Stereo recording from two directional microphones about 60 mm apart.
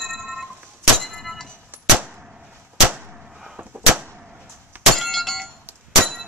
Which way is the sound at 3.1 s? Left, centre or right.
Centre.